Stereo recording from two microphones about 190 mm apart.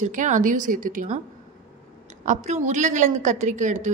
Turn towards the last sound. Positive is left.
turn(degrees=-40)  # may be behind; listen again after turning